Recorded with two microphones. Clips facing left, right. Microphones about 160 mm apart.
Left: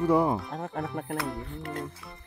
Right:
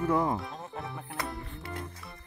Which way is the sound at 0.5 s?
55° left (ahead or behind).